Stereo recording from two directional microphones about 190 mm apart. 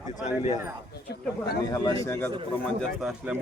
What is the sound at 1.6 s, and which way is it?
Speech, 20° left (ahead or behind).